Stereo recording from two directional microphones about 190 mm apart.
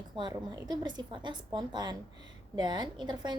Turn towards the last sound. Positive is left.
turn(degrees=-20)  # may be behind; listen again after turning